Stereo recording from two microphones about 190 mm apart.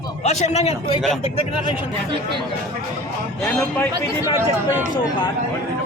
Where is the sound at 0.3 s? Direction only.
35° left (ahead or behind).